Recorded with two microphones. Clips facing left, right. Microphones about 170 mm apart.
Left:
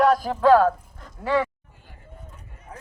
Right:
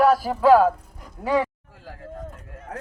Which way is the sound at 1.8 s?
90° right.